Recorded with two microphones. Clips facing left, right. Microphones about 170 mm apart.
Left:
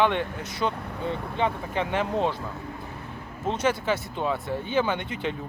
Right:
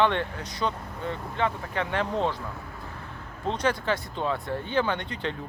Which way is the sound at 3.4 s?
5° left (ahead or behind).